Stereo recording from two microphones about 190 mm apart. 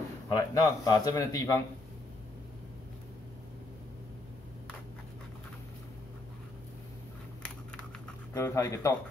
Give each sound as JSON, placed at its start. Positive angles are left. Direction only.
{"t": 0.3, "sound": "a man's voice", "side_deg": 20}
{"t": 8.3, "sound": "speech", "side_deg": 15}